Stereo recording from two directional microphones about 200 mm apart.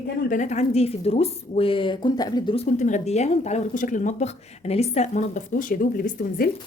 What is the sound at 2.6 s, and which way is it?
Speech, 35° left (ahead or behind).